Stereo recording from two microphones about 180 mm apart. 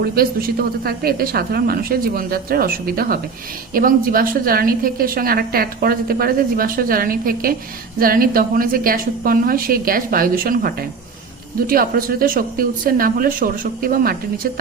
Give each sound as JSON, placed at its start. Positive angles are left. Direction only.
{"t": 0.0, "sound": "a woman's voice", "side_deg": -55}